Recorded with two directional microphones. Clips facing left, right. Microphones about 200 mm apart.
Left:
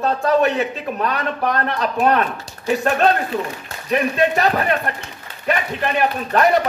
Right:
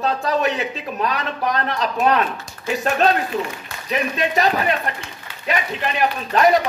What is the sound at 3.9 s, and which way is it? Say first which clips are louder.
Speech: left 4 dB; 55° left (ahead or behind).